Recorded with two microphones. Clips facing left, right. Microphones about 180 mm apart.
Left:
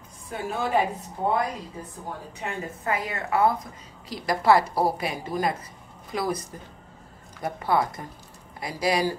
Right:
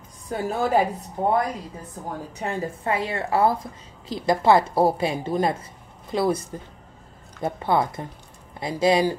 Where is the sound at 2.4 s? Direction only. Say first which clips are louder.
Right 4 dB; 30° right (ahead or behind).